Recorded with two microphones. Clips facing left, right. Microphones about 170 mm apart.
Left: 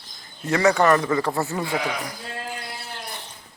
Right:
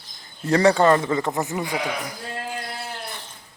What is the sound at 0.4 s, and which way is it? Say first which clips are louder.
Speech: right 2 dB; 35° right (ahead or behind).